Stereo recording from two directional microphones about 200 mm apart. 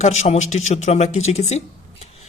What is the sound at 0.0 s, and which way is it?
Speech, 35° left (ahead or behind).